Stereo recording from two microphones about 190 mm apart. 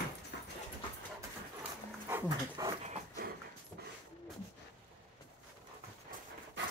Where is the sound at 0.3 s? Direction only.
60° left (ahead or behind).